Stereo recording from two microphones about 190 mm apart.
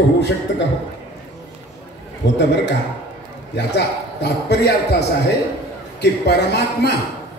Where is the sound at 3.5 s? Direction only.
65° left (ahead or behind).